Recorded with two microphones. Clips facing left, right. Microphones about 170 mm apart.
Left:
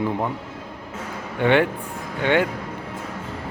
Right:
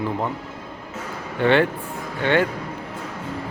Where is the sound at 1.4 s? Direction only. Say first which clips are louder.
Even; 15° left (ahead or behind).